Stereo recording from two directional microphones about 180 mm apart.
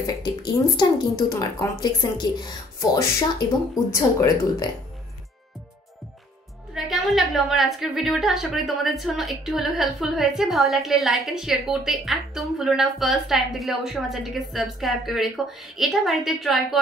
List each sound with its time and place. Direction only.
0.0 s speech: 25° left (ahead or behind)
6.7 s a woman's voice: centre (ahead or behind)